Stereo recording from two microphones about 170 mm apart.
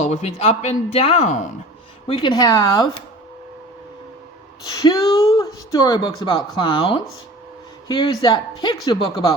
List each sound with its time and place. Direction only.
0.0 s speech: 45° left (ahead or behind)
2.0 s speech: 25° left (ahead or behind)
4.8 s speech: 20° left (ahead or behind)